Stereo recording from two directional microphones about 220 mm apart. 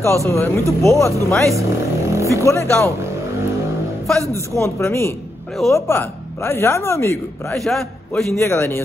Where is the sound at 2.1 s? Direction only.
15° right (ahead or behind).